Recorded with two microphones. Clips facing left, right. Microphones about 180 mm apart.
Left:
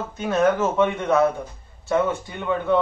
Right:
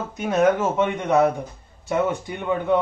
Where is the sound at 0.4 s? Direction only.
15° right (ahead or behind).